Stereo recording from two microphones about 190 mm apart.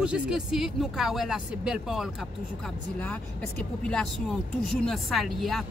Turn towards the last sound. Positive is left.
turn(degrees=0)  # may be behind; listen again after turning